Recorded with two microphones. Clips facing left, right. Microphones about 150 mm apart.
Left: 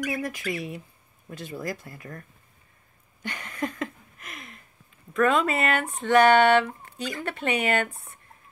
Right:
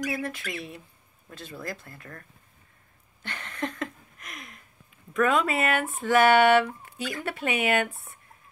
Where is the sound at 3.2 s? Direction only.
10° left (ahead or behind).